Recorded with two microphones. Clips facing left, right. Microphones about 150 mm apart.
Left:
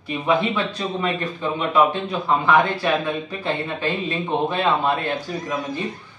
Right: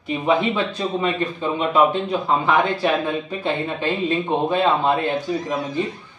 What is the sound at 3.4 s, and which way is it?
A man's voice, 20° right (ahead or behind).